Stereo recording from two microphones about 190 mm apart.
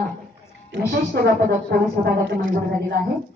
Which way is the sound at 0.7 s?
60° right (ahead or behind).